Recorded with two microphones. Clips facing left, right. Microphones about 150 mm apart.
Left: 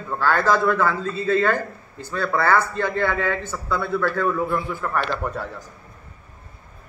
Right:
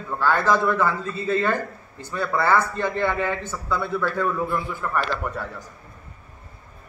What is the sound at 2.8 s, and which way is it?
Speech, 15° right (ahead or behind).